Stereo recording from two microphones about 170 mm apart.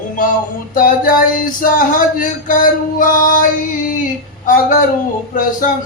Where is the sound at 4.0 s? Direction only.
50° left (ahead or behind).